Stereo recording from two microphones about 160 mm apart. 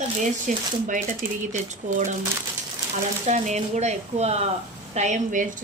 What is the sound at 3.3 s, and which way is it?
A woman's voice, 45° right (ahead or behind).